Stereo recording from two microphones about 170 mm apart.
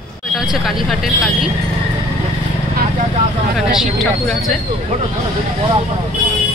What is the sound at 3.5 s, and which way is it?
Speech, centre (ahead or behind).